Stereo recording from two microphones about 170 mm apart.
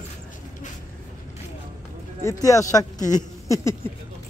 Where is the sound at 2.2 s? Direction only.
20° left (ahead or behind).